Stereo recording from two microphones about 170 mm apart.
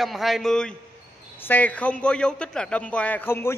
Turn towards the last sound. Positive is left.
turn(degrees=15)  # may be behind; listen again after turning